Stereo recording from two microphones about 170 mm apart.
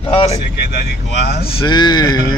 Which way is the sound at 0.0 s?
35° left (ahead or behind).